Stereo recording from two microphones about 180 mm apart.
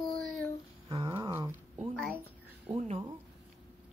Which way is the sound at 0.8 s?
20° right (ahead or behind).